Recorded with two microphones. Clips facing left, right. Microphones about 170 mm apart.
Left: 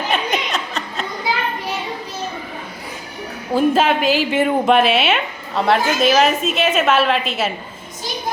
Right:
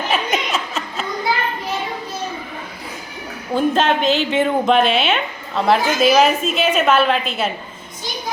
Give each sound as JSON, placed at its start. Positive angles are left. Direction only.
{"t": 0.1, "sound": "chuckle", "side_deg": -5}
{"t": 3.5, "sound": "a woman's voice", "side_deg": 5}